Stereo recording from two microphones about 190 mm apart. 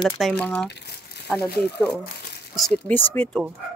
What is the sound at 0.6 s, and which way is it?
Crumpling, 60° left (ahead or behind).